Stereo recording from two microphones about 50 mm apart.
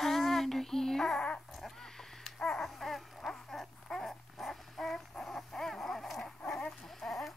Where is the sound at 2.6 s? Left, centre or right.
Centre.